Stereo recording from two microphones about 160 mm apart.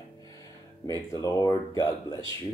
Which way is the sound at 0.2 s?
20° left (ahead or behind).